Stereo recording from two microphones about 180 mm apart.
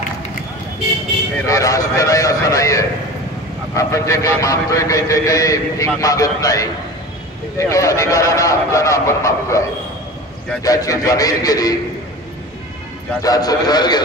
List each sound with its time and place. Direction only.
1.4 s a man's voice: 20° left (ahead or behind)
10.6 s a man's voice: 20° left (ahead or behind)
13.2 s a man's voice: 20° left (ahead or behind)